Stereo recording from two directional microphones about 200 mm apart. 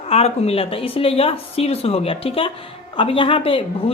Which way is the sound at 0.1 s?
30° left (ahead or behind).